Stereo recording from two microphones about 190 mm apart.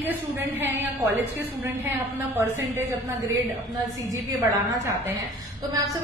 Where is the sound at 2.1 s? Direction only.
10° right (ahead or behind).